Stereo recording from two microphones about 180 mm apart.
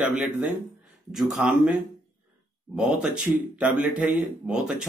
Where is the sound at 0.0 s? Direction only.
5° right (ahead or behind).